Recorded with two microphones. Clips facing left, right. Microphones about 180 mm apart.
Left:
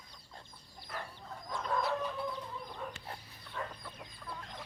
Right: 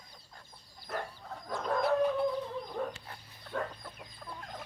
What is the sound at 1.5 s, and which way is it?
Chicken, 55° right (ahead or behind).